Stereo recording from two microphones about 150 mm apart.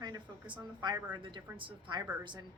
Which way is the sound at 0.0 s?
30° right (ahead or behind).